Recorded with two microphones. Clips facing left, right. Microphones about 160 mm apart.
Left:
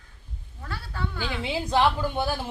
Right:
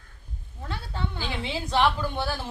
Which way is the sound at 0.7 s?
20° right (ahead or behind).